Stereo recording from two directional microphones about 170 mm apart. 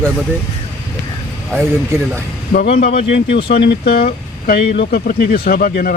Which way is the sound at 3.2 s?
90° left.